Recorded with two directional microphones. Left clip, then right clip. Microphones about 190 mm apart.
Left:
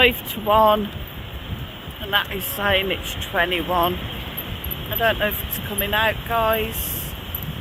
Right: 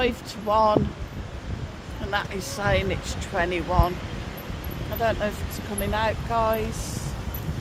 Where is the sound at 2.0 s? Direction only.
15° left (ahead or behind).